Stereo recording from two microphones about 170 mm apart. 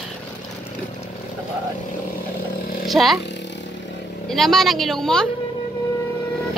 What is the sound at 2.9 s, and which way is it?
Speech, centre (ahead or behind).